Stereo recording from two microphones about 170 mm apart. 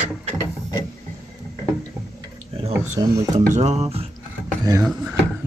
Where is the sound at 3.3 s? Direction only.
40° right (ahead or behind).